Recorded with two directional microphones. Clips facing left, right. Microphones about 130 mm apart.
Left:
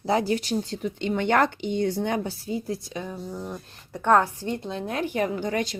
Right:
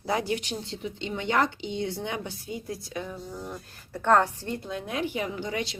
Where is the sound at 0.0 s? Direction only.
30° left (ahead or behind).